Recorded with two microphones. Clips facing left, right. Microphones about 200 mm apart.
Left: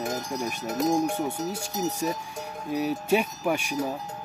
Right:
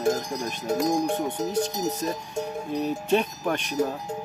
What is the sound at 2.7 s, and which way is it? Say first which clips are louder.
Speech: even; 10° left (ahead or behind).